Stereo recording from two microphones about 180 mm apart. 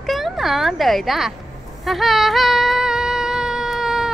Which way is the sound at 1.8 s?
Centre (ahead or behind).